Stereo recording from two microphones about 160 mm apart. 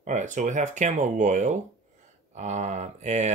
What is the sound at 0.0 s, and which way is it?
Speech, 50° right (ahead or behind).